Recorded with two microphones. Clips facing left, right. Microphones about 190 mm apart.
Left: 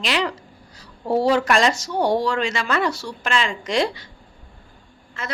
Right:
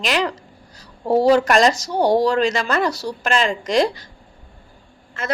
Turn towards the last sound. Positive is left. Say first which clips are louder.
# right 5 dB
turn(degrees=-50)  # may be behind; listen again after turning